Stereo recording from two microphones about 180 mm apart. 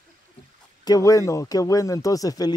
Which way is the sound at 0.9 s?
20° left (ahead or behind).